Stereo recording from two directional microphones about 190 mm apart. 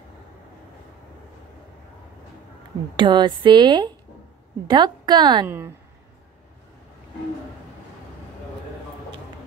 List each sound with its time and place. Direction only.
3.0 s a woman's voice: 25° right (ahead or behind)